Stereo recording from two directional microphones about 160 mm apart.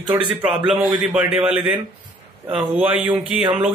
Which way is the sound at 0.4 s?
5° right (ahead or behind).